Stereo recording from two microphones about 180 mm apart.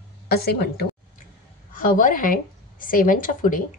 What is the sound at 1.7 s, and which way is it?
A woman's voice, 45° left (ahead or behind).